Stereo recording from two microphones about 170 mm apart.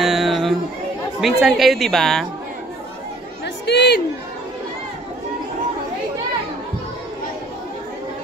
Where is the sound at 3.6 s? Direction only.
85° left.